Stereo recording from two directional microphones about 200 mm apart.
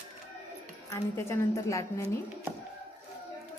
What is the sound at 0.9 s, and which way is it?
A woman's voice, 15° left (ahead or behind).